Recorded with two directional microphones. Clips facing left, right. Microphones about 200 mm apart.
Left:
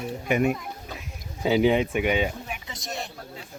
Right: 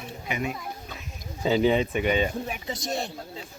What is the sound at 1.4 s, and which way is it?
Speech, 10° left (ahead or behind).